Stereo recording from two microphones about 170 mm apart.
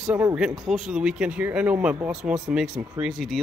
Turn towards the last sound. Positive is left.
turn(degrees=0)  # may be behind; listen again after turning